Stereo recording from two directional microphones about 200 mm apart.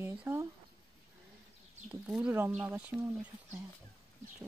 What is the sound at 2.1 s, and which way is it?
Speech, 5° right (ahead or behind).